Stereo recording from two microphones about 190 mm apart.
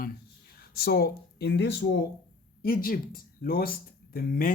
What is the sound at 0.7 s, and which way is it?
Speech, 55° left (ahead or behind).